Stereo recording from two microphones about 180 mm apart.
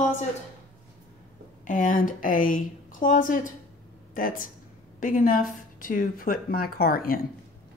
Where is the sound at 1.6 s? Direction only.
45° left (ahead or behind).